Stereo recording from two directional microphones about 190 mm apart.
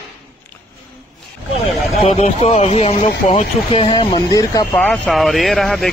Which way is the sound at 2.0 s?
30° left (ahead or behind).